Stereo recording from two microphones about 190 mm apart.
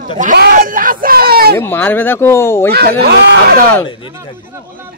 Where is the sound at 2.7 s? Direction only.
55° right (ahead or behind).